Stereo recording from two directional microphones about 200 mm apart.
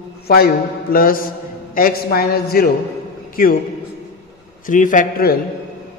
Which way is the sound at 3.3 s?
45° left (ahead or behind).